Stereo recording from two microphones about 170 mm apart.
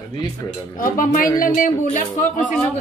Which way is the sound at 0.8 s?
55° left (ahead or behind).